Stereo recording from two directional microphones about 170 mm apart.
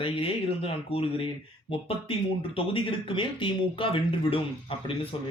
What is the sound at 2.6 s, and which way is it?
Speech, 30° left (ahead or behind).